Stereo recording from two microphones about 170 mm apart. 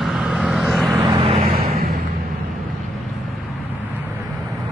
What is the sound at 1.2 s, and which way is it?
Vehicle, 35° right (ahead or behind).